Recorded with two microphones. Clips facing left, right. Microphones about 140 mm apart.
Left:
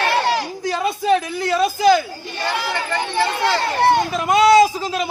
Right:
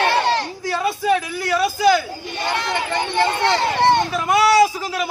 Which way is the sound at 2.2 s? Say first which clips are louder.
Even; 20° right (ahead or behind).